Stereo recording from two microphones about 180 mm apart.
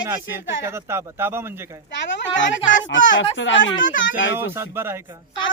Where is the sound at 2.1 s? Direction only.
90° left.